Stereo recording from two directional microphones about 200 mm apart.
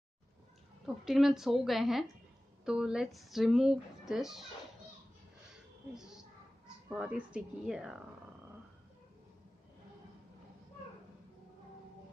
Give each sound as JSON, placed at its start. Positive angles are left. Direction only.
{"t": 0.8, "sound": "speech", "side_deg": 0}
{"t": 5.9, "sound": "a sound", "side_deg": 0}
{"t": 6.9, "sound": "speech", "side_deg": -5}